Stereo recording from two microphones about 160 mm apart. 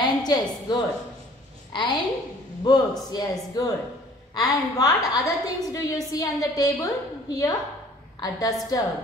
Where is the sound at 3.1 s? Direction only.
25° left (ahead or behind).